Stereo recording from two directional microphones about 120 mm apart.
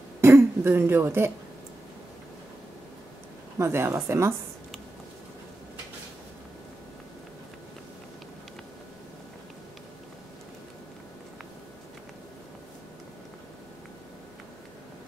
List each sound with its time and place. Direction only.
0.2 s speech: 20° right (ahead or behind)
3.5 s a woman's voice: 20° right (ahead or behind)